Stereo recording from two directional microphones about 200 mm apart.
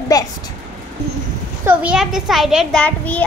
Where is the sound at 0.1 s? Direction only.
20° left (ahead or behind).